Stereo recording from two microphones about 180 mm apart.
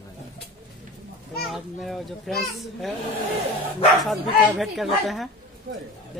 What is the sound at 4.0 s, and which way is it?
A child's voice, centre (ahead or behind).